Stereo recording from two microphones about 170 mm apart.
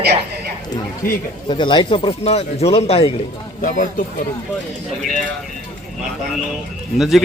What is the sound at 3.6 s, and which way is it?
Speech, 50° left (ahead or behind).